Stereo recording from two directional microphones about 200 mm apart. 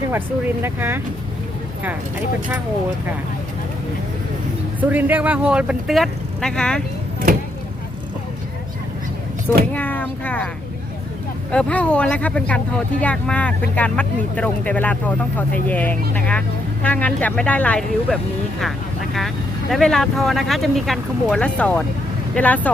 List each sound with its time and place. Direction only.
0.1 s speech: 10° right (ahead or behind)
4.8 s speech: 10° right (ahead or behind)
9.7 s speech: 10° left (ahead or behind)
11.5 s speech: 5° left (ahead or behind)
19.7 s speech: centre (ahead or behind)